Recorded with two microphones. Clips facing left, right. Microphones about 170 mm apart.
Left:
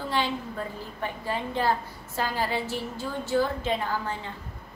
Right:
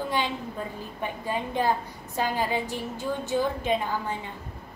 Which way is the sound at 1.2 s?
15° right (ahead or behind).